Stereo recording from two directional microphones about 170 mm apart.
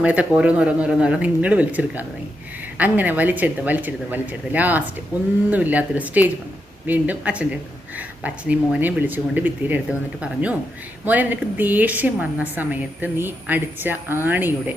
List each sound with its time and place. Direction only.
0.0 s speech: 5° right (ahead or behind)